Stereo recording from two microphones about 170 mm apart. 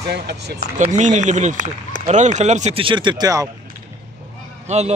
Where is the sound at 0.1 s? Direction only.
80° right.